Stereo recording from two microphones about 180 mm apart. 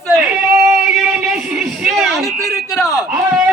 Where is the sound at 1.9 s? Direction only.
Centre (ahead or behind).